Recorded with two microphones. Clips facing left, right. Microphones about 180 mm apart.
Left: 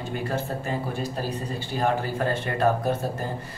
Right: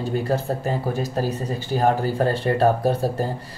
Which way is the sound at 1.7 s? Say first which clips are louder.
Right 5 dB; 35° right (ahead or behind).